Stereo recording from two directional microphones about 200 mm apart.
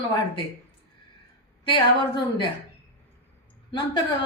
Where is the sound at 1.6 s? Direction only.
25° left (ahead or behind).